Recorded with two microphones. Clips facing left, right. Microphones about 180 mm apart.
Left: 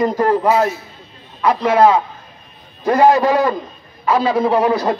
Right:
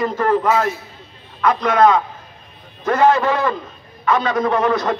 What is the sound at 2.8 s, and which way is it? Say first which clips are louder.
A man's voice: left 3 dB; 35° left (ahead or behind).